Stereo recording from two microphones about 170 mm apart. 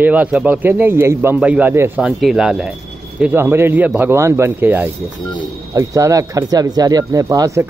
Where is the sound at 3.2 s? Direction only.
15° right (ahead or behind).